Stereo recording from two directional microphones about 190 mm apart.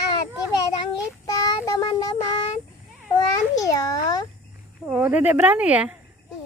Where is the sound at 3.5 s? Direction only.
20° left (ahead or behind).